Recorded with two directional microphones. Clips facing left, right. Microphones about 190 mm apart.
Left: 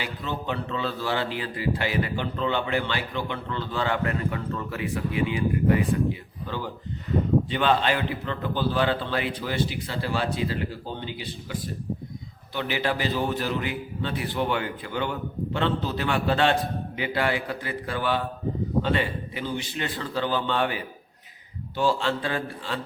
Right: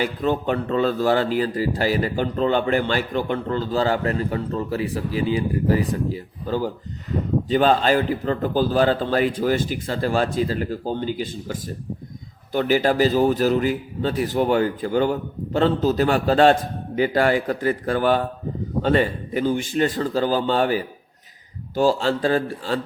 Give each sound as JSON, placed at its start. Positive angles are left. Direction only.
{"t": 0.0, "sound": "a man's voice", "side_deg": -50}